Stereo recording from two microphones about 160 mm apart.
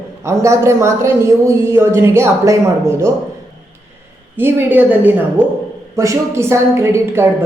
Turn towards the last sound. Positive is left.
turn(degrees=-15)  # may be behind; listen again after turning